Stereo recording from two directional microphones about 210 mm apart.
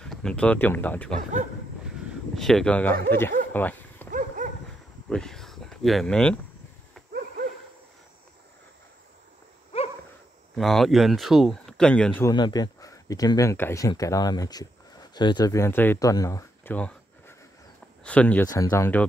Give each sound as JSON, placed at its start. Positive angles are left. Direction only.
{"t": 0.0, "sound": "speech", "side_deg": 5}
{"t": 2.3, "sound": "speech", "side_deg": 0}
{"t": 3.5, "sound": "dog", "side_deg": 10}
{"t": 4.1, "sound": "dog", "side_deg": -40}
{"t": 5.1, "sound": "speech", "side_deg": 0}
{"t": 9.7, "sound": "dog", "side_deg": 25}
{"t": 10.5, "sound": "speech", "side_deg": 0}
{"t": 12.3, "sound": "speech", "side_deg": 20}